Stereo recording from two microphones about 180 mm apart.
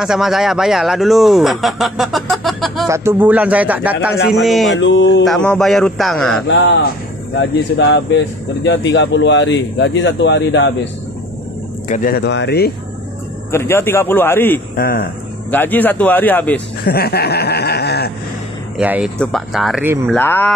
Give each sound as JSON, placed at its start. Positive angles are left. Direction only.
{"t": 0.0, "sound": "speech", "side_deg": -5}
{"t": 2.9, "sound": "speech", "side_deg": -15}
{"t": 4.7, "sound": "a man's voice", "side_deg": 90}
{"t": 5.2, "sound": "speech", "side_deg": 5}
{"t": 6.4, "sound": "a man's voice", "side_deg": 75}
{"t": 11.9, "sound": "speech", "side_deg": 50}
{"t": 13.5, "sound": "a man's voice", "side_deg": 15}
{"t": 14.8, "sound": "speech", "side_deg": 55}
{"t": 15.5, "sound": "a man's voice", "side_deg": 10}
{"t": 16.8, "sound": "chuckle", "side_deg": 60}
{"t": 18.8, "sound": "speech", "side_deg": -5}
{"t": 20.2, "sound": "a man's voice", "side_deg": 10}